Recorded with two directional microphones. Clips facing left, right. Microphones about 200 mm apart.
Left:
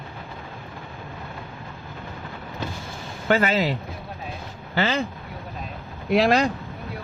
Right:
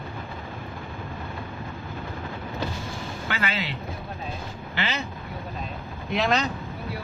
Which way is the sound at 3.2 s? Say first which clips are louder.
Left 10 dB; 40° left (ahead or behind).